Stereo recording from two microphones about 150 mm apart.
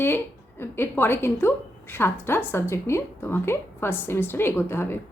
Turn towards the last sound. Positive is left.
turn(degrees=15)  # may be behind; listen again after turning